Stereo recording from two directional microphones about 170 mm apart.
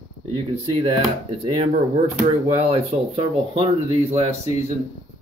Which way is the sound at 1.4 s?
35° right (ahead or behind).